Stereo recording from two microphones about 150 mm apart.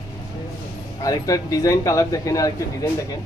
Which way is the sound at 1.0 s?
25° left (ahead or behind).